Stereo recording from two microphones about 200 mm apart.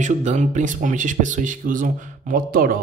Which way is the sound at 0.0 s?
35° right (ahead or behind).